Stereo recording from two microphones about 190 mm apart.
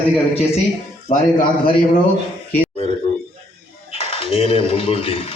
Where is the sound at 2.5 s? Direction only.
30° left (ahead or behind).